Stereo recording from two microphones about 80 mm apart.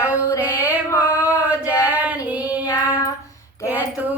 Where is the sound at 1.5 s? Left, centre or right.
Centre.